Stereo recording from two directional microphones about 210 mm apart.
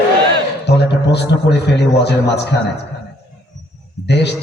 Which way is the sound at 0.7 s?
55° left (ahead or behind).